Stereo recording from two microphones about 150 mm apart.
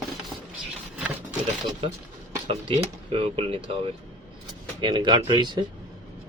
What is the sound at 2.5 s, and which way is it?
Speech, 35° right (ahead or behind).